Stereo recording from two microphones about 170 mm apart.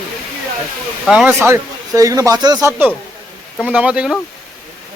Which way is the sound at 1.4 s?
20° right (ahead or behind).